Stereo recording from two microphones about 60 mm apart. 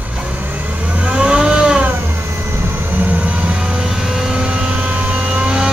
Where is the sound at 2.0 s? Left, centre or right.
Right.